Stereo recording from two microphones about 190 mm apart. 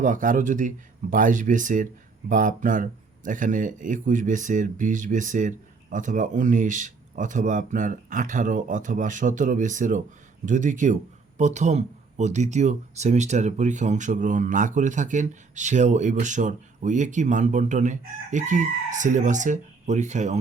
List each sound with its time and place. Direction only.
0.0 s speech: 45° right (ahead or behind)